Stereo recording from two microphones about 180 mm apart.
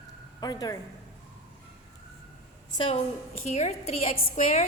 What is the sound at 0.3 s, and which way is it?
Speech, 20° left (ahead or behind).